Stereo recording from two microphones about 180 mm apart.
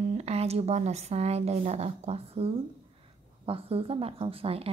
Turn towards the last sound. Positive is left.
turn(degrees=-30)  # may be behind; listen again after turning